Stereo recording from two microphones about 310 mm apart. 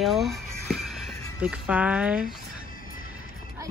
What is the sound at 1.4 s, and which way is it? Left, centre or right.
Speech, centre.